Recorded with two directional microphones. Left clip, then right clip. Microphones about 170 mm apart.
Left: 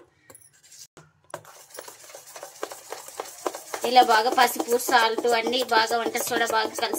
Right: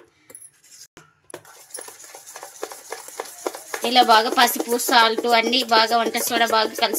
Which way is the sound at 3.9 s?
40° right (ahead or behind).